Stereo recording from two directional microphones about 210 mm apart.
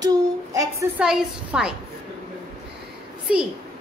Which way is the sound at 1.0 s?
5° right (ahead or behind).